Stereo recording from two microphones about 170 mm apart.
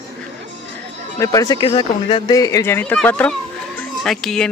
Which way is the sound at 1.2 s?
20° left (ahead or behind).